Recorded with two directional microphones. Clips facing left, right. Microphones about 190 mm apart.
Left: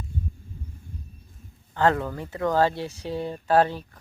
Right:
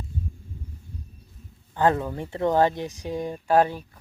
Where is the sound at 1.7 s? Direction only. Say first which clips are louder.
Even; 15° right (ahead or behind).